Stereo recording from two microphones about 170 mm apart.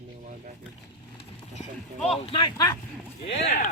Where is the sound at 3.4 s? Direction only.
45° left (ahead or behind).